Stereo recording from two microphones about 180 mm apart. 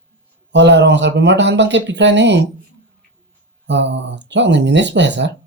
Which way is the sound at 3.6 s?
80° right.